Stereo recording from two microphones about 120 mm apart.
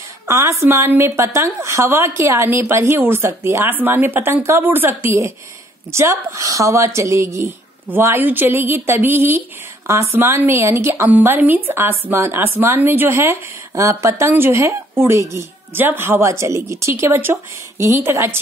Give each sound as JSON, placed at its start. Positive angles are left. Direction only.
{"t": 0.3, "sound": "a woman's voice", "side_deg": -25}